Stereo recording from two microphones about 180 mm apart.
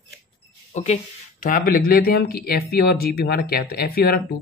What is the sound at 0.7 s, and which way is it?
Speech, 40° left (ahead or behind).